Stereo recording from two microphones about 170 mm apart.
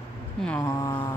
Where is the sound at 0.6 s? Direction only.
20° left (ahead or behind).